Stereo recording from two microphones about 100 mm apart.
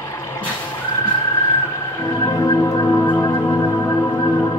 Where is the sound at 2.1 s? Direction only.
35° left (ahead or behind).